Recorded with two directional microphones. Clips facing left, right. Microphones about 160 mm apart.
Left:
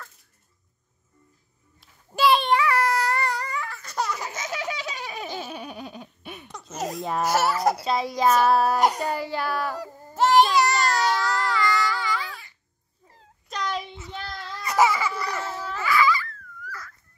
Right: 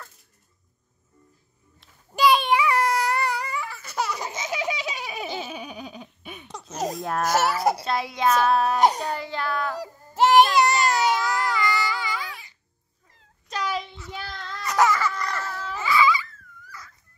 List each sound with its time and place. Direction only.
1.8 s a sound: centre (ahead or behind)
2.6 s baby cry: 15° right (ahead or behind)
4.2 s baby laughter: 15° right (ahead or behind); by 6.5 s centre (ahead or behind)
7.0 s a child's voice: centre (ahead or behind)
7.2 s a sound: 20° right (ahead or behind)
7.5 s a child's voice: 5° right (ahead or behind)
10.3 s baby cry: 5° right (ahead or behind)
13.5 s a sound: 5° right (ahead or behind)
13.8 s child singing: 20° left (ahead or behind)
14.1 s child singing: 5° right (ahead or behind)
14.4 s baby cry: 10° left (ahead or behind)
15.7 s baby cry: 20° right (ahead or behind)